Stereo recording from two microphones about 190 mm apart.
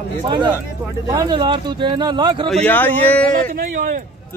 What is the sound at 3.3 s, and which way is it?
Speech, 45° right (ahead or behind).